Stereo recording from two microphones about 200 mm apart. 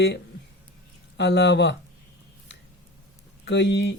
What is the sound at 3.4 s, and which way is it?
Speech, 60° left (ahead or behind).